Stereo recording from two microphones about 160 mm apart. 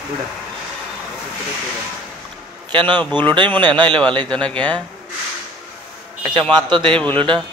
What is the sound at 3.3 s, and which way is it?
Speech, 30° right (ahead or behind).